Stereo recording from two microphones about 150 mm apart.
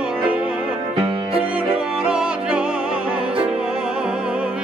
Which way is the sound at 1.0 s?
35° right (ahead or behind).